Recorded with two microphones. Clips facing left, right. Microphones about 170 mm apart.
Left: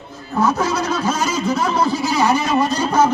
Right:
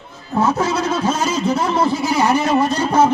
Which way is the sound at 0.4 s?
25° right (ahead or behind).